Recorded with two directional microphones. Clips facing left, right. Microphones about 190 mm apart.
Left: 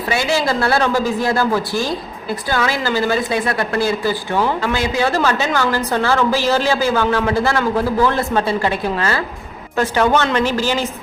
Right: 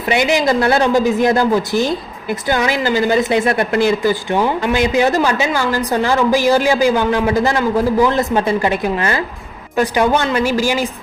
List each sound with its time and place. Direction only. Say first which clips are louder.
0.1 s a woman's voice: right 4 dB; 20° right (ahead or behind)